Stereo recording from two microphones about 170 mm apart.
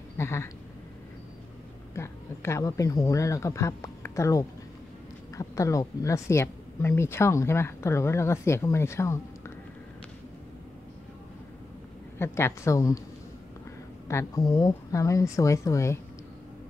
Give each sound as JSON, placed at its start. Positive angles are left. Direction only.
{"t": 0.2, "sound": "speech", "side_deg": 15}
{"t": 2.0, "sound": "speech", "side_deg": 15}
{"t": 12.2, "sound": "speech", "side_deg": 15}
{"t": 14.0, "sound": "a woman's voice", "side_deg": 20}